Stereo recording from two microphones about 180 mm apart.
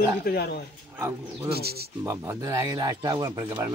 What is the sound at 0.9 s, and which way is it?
Speech, 15° right (ahead or behind).